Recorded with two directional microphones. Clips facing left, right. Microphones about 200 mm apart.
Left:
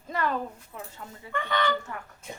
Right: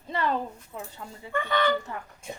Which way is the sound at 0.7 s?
25° right (ahead or behind).